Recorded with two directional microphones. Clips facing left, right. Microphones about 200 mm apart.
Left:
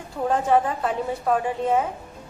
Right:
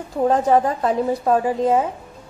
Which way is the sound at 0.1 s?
40° right (ahead or behind).